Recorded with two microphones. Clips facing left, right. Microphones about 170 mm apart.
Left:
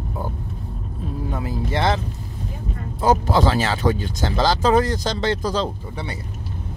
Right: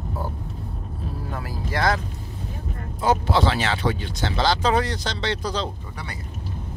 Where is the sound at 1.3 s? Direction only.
20° left (ahead or behind).